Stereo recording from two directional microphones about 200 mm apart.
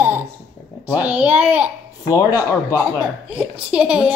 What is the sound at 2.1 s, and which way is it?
Speech, 15° left (ahead or behind).